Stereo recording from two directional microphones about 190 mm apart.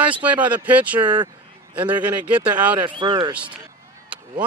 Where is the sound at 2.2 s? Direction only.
10° right (ahead or behind).